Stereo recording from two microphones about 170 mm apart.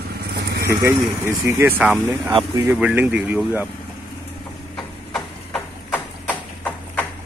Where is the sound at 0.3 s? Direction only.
75° right (ahead or behind).